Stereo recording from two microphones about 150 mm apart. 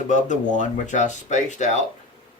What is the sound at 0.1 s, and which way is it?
Speech, 55° left (ahead or behind).